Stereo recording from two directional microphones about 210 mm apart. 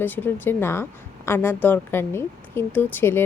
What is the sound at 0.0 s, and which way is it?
A woman's voice, 10° left (ahead or behind).